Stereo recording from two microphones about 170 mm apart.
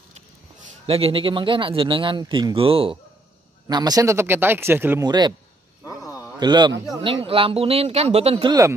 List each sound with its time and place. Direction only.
0.8 s speech: 35° right (ahead or behind)
3.6 s speech: 20° right (ahead or behind)
5.0 s speech: 25° right (ahead or behind)
5.9 s a sound: 20° left (ahead or behind)
6.4 s speech: 25° right (ahead or behind)